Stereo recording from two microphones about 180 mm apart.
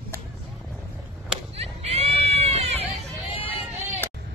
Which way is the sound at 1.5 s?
35° right (ahead or behind).